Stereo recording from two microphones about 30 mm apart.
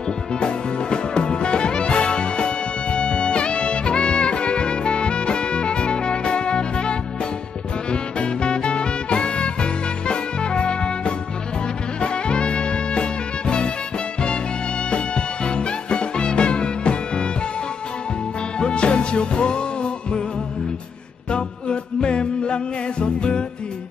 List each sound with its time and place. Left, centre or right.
0.3 s music: left
14.9 s music: left
18.6 s music: left
21.3 s music: left